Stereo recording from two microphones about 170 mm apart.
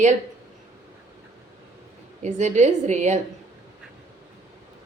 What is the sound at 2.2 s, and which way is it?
Speech, 45° right (ahead or behind).